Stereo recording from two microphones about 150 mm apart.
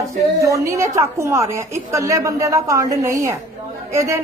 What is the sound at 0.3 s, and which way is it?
Speech, 20° right (ahead or behind).